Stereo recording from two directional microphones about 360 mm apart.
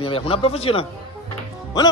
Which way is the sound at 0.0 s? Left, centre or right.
Centre.